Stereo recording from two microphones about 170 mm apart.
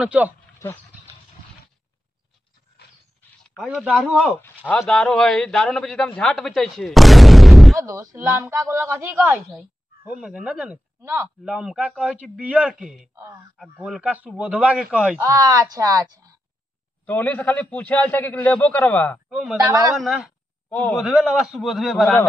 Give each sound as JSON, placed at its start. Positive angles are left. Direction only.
{"t": 0.0, "sound": "a woman's voice", "side_deg": -10}
{"t": 3.6, "sound": "a man's voice", "side_deg": -5}
{"t": 7.8, "sound": "a woman's voice", "side_deg": -20}
{"t": 13.1, "sound": "a woman's voice", "side_deg": -15}
{"t": 13.6, "sound": "a woman's voice", "side_deg": -5}
{"t": 15.4, "sound": "speech", "side_deg": -20}
{"t": 17.0, "sound": "a man's voice", "side_deg": 10}
{"t": 19.2, "sound": "speech", "side_deg": 0}
{"t": 19.6, "sound": "speech", "side_deg": -20}
{"t": 20.0, "sound": "a man's voice", "side_deg": 0}
{"t": 21.0, "sound": "a man's voice", "side_deg": -5}